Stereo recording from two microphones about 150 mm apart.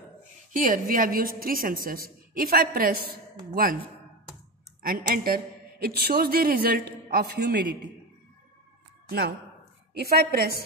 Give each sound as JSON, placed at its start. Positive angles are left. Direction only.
{"t": 0.5, "sound": "a woman's voice", "side_deg": -65}
{"t": 4.8, "sound": "a woman's voice", "side_deg": -75}
{"t": 9.9, "sound": "a woman's voice", "side_deg": -90}